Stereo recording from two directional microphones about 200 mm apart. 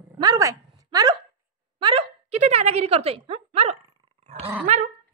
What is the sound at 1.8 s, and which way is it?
Speech, 30° right (ahead or behind).